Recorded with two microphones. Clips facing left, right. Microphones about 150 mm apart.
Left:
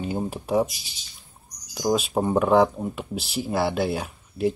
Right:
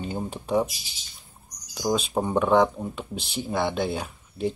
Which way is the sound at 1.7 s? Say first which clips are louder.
Left 2 dB; 5° left (ahead or behind).